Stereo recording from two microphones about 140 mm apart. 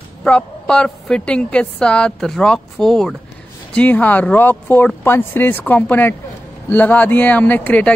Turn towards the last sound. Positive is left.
turn(degrees=10)  # may be behind; listen again after turning